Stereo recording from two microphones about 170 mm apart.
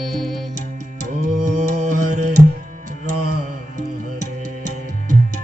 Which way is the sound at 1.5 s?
45° right (ahead or behind).